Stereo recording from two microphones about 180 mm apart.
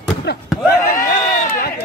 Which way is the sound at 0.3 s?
65° left (ahead or behind).